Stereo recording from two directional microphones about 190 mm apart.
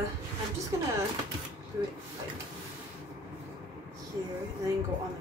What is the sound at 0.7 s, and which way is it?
Speech, 15° right (ahead or behind).